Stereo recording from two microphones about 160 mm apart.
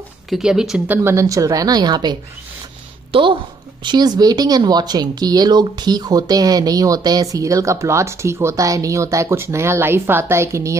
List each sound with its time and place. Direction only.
0.3 s a woman's voice: 5° right (ahead or behind)